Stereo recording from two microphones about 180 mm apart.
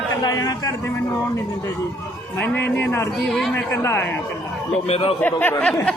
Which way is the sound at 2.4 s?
10° left (ahead or behind).